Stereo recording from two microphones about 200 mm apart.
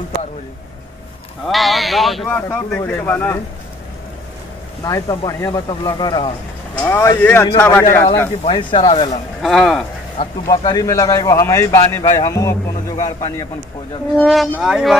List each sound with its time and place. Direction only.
1.5 s speech: centre (ahead or behind)
2.3 s speech: 10° left (ahead or behind)
4.8 s speech: 20° left (ahead or behind)
8.5 s speech: 25° left (ahead or behind)
9.4 s speech: centre (ahead or behind)
10.1 s speech: 25° left (ahead or behind)
14.1 s speech: centre (ahead or behind)